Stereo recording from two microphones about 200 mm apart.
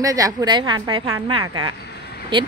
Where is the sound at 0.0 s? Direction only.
15° right (ahead or behind).